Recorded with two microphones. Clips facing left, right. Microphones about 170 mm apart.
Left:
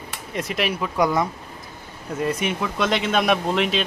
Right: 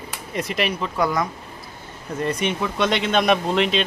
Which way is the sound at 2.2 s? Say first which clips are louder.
Right 1 dB; 5° left (ahead or behind).